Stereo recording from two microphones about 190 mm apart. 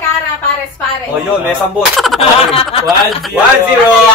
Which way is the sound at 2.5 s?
30° left (ahead or behind).